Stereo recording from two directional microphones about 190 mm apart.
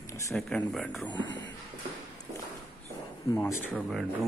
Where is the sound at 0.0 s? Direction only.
15° left (ahead or behind).